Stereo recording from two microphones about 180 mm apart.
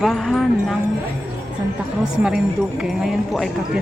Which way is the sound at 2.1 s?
5° right (ahead or behind).